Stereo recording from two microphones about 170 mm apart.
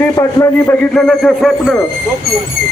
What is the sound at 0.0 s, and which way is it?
Speech, 20° left (ahead or behind).